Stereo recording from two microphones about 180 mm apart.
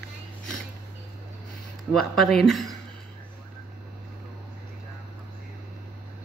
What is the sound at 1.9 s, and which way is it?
Speech, centre (ahead or behind).